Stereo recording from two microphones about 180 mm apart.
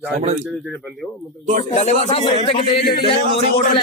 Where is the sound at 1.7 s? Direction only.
40° left (ahead or behind).